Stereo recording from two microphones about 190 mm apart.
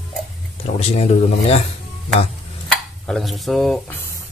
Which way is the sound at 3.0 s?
Centre (ahead or behind).